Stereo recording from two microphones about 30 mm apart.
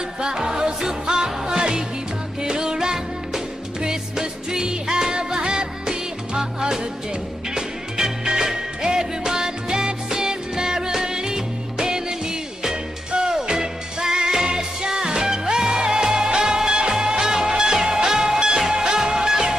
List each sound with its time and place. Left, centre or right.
0.2 s music: right
8.3 s music: right